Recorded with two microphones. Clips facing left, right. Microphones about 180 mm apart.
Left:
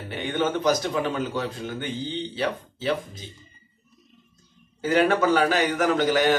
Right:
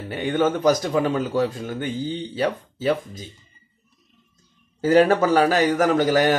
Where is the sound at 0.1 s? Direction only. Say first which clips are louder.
Right 4 dB; 40° right (ahead or behind).